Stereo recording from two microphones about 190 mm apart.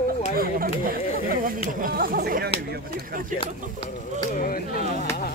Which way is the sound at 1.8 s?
50° right (ahead or behind).